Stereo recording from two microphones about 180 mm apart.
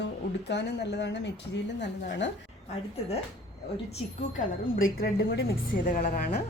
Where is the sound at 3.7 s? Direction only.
35° left (ahead or behind); by 5.5 s 65° left (ahead or behind).